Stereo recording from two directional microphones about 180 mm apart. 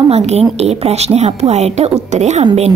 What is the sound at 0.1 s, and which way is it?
A woman's voice, 35° right (ahead or behind).